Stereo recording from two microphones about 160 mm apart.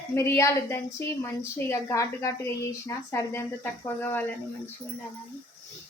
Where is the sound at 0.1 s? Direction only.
15° left (ahead or behind).